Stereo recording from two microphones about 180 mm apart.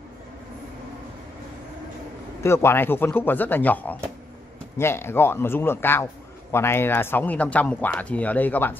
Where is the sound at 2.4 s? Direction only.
15° left (ahead or behind).